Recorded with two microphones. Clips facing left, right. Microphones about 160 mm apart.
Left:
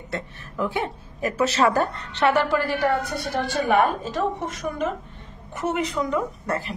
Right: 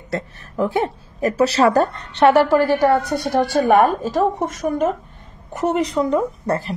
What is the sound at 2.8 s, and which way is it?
A woman's voice, 40° right (ahead or behind).